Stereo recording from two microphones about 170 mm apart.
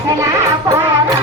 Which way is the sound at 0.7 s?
20° right (ahead or behind).